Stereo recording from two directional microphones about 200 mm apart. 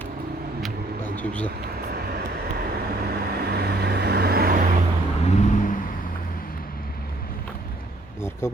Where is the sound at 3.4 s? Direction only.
55° right (ahead or behind).